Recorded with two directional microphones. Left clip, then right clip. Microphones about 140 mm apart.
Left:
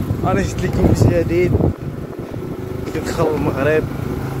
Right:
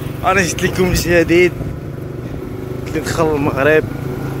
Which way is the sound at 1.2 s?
Centre (ahead or behind).